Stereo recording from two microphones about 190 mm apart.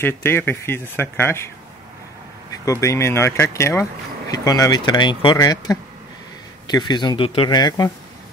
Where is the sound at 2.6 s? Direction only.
15° left (ahead or behind).